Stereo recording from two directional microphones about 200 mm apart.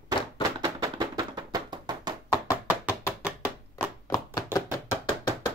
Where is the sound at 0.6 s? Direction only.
20° right (ahead or behind).